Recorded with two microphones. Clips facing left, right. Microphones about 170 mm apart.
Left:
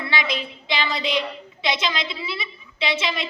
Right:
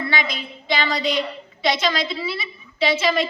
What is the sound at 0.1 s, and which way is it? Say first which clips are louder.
A woman's voice: even; 45° right (ahead or behind).